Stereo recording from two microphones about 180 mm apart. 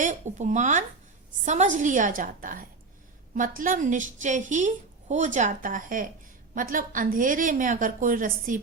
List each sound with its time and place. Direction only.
0.0 s a woman's voice: 45° right (ahead or behind)